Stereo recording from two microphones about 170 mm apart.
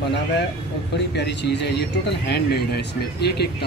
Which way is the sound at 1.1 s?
85° left.